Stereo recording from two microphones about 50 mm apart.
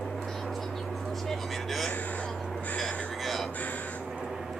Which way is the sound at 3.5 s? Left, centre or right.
Left.